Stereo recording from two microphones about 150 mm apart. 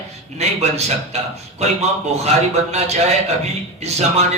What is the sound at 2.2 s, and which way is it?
Music, 45° right (ahead or behind).